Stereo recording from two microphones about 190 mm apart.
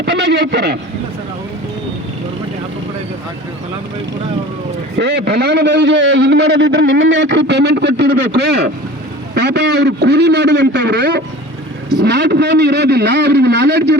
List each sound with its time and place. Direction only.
0.0 s a man's voice: 65° right (ahead or behind)
4.9 s a man's voice: 65° right (ahead or behind)